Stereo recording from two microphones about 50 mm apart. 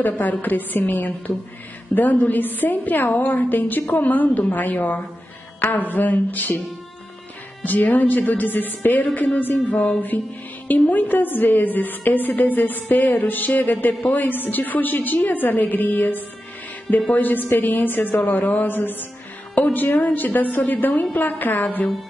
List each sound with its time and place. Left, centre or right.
0.0 s a woman's voice: left
7.6 s a woman's voice: left